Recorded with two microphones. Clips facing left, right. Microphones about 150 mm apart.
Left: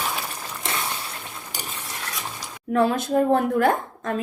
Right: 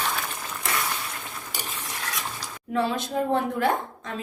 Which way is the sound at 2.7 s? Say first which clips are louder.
Left 5 dB; 50° left (ahead or behind).